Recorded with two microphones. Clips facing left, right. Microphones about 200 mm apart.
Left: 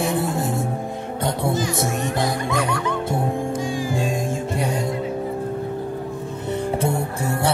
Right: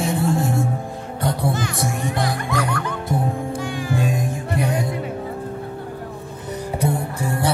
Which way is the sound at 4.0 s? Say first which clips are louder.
Even; 25° left (ahead or behind).